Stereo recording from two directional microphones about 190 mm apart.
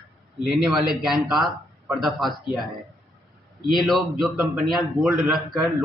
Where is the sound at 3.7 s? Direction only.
Centre (ahead or behind).